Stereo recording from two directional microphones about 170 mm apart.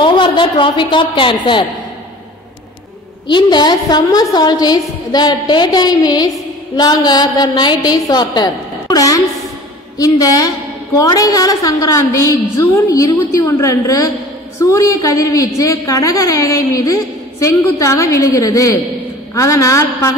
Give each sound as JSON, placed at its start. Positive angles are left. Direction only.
{"t": 0.0, "sound": "a woman's voice", "side_deg": 30}
{"t": 3.3, "sound": "a woman's voice", "side_deg": 25}